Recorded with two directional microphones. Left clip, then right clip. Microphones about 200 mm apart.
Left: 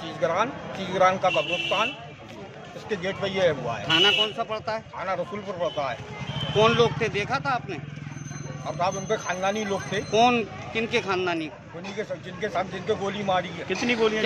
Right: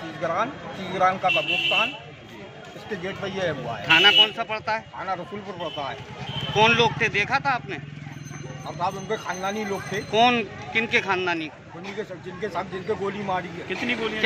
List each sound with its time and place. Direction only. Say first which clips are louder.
0.2 s speech: left 1 dB; 10° left (ahead or behind)
3.2 s speech: left 5 dB; 5° left (ahead or behind)
13.7 s speech: left 3 dB; 40° left (ahead or behind)